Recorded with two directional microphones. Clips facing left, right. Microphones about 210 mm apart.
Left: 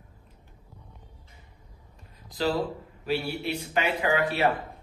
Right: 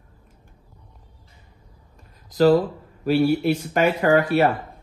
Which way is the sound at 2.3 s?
45° right (ahead or behind).